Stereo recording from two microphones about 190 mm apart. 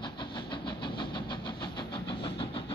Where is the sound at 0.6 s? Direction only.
25° left (ahead or behind).